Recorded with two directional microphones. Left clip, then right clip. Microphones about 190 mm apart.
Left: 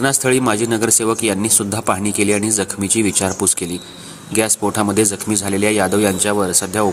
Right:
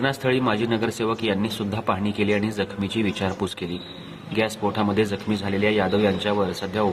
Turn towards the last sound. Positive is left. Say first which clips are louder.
# left 6 dB
turn(degrees=45)  # may be behind; listen again after turning